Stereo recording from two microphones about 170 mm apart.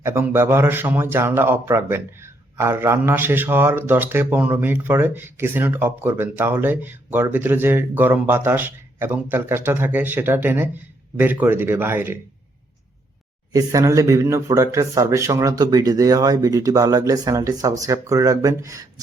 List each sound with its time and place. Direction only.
0.0 s a man's voice: 15° right (ahead or behind)
13.5 s speech: 20° right (ahead or behind)